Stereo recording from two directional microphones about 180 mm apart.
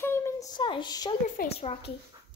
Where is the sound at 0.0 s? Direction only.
15° left (ahead or behind).